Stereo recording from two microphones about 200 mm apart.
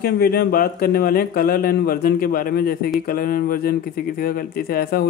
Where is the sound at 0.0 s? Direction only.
50° left (ahead or behind).